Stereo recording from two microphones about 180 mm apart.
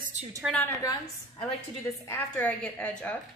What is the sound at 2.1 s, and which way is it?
A woman's voice, 10° left (ahead or behind).